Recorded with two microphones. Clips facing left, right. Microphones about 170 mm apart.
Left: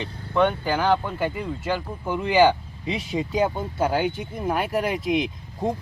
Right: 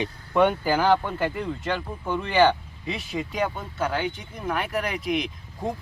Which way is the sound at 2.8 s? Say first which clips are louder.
Left 3 dB; 25° left (ahead or behind).